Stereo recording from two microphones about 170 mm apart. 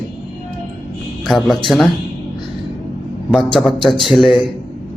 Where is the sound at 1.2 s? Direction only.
Centre (ahead or behind).